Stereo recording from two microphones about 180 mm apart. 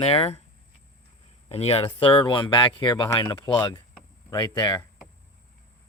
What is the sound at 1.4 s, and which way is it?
Speech, 35° left (ahead or behind).